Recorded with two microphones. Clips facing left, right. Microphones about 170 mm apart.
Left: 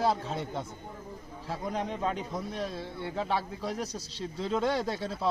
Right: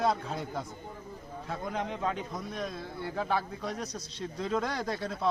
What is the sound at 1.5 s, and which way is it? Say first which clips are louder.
A man's voice: left 2 dB; 30° left (ahead or behind).